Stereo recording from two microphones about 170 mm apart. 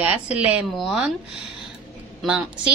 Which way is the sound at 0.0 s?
5° right (ahead or behind).